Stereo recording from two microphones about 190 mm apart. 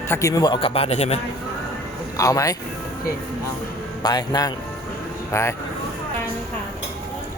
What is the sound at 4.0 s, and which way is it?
A man's voice, 20° left (ahead or behind).